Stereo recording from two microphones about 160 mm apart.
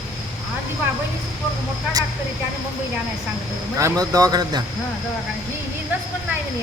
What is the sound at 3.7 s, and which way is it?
Speech, 20° right (ahead or behind).